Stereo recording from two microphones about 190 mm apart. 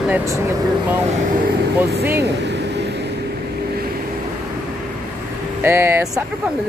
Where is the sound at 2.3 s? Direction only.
65° right (ahead or behind).